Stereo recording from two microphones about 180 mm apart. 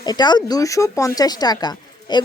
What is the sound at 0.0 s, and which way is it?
A woman's voice, 25° left (ahead or behind).